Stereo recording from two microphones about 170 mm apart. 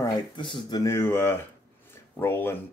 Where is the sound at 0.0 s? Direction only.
30° left (ahead or behind).